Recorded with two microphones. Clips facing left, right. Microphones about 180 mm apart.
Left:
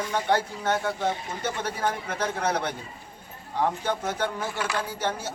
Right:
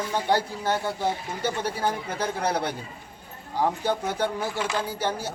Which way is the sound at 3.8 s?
10° right (ahead or behind).